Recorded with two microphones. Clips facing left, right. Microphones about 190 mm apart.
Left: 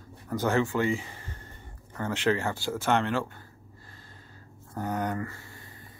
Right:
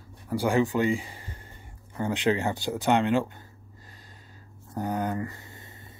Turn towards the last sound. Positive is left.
turn(degrees=-25)  # may be behind; listen again after turning